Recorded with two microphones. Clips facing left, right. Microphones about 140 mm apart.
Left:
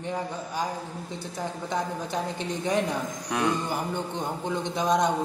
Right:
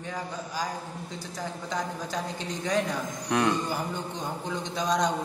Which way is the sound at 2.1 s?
25° left (ahead or behind).